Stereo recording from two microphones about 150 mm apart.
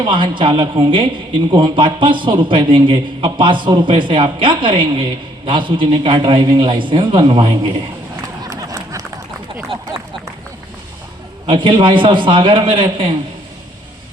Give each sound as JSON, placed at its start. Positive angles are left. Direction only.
{"t": 0.0, "sound": "a man's voice", "side_deg": -30}
{"t": 8.1, "sound": "run", "side_deg": -20}
{"t": 11.4, "sound": "a man's voice", "side_deg": -35}